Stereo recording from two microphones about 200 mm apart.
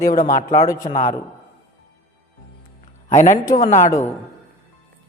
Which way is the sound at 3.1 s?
35° left (ahead or behind).